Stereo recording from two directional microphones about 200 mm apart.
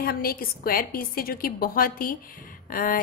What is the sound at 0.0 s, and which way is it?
A woman's voice, 50° left (ahead or behind).